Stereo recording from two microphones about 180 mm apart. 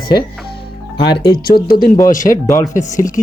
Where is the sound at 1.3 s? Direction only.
60° left (ahead or behind).